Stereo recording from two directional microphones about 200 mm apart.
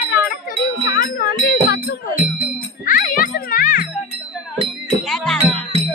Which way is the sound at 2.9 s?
40° left (ahead or behind).